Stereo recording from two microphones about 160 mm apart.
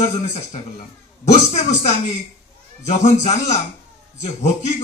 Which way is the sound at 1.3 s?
45° left (ahead or behind).